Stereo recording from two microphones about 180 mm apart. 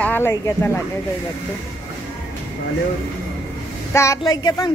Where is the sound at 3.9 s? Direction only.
15° left (ahead or behind).